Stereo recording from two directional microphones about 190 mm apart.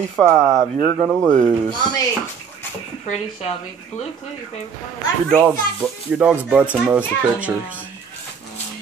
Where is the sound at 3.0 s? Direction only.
35° left (ahead or behind).